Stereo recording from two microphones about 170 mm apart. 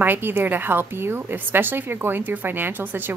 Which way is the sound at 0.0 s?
10° right (ahead or behind).